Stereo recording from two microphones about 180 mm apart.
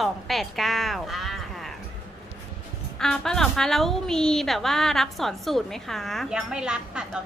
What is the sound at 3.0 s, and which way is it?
A woman's voice, 5° left (ahead or behind).